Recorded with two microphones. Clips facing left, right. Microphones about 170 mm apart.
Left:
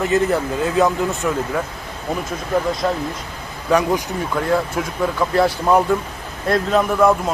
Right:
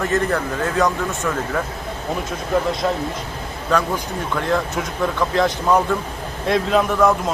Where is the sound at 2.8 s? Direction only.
5° right (ahead or behind).